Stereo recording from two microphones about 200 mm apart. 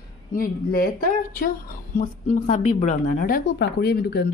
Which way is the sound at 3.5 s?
55° left (ahead or behind).